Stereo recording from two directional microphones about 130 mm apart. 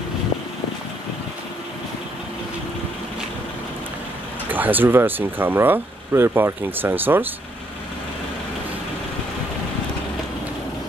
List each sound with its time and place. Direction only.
4.5 s speech: 15° right (ahead or behind)